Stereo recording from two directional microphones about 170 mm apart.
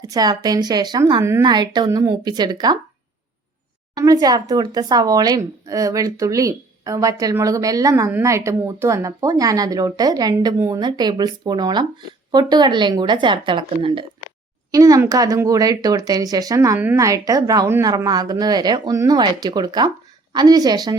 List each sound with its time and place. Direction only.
0.1 s speech: 25° right (ahead or behind)
3.9 s speech: 20° right (ahead or behind)